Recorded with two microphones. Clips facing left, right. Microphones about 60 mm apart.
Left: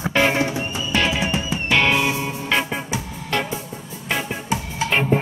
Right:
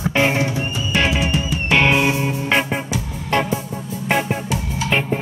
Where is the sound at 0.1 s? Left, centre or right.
Centre.